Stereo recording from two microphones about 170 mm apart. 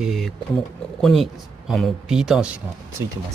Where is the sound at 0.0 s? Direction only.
Centre (ahead or behind).